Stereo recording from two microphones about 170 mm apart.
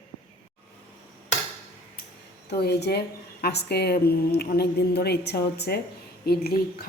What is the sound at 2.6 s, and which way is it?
A woman's voice, 75° left (ahead or behind).